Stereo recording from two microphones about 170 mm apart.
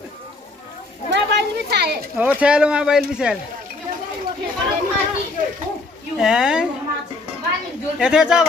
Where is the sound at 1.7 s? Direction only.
70° right (ahead or behind).